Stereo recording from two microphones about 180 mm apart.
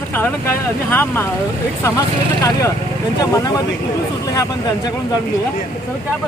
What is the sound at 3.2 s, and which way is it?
Speech, 20° left (ahead or behind).